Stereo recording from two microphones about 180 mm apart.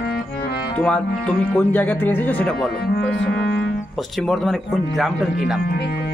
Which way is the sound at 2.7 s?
60° left (ahead or behind).